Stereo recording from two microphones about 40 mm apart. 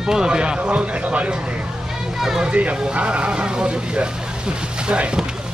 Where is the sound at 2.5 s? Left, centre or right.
Right.